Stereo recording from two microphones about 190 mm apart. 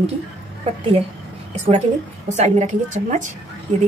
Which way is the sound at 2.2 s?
40° right (ahead or behind).